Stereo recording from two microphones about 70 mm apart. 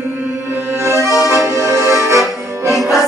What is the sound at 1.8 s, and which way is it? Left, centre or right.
Accordion, right.